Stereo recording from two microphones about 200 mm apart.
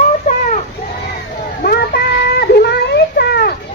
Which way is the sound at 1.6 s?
50° left (ahead or behind).